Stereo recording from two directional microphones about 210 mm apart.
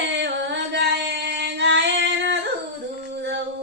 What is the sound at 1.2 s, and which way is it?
Female singing, 55° right (ahead or behind).